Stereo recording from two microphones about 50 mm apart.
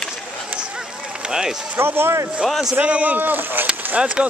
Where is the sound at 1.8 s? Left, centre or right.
Right.